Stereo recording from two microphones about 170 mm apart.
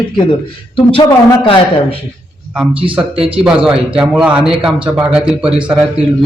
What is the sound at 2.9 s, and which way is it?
Speech, 10° right (ahead or behind).